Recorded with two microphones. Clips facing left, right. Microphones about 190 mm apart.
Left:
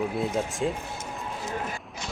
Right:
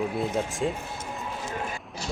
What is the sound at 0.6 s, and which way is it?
Speech, centre (ahead or behind).